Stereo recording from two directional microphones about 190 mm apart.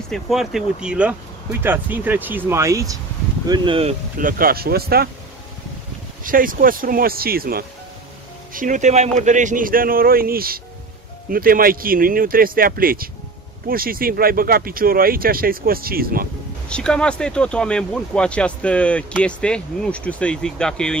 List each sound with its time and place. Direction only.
0.1 s speech: centre (ahead or behind); by 3.9 s 25° right (ahead or behind)
4.2 s speech: 45° right (ahead or behind)
6.2 s speech: 45° right (ahead or behind)
8.5 s speech: 40° right (ahead or behind)
16.6 s speech: 5° left (ahead or behind)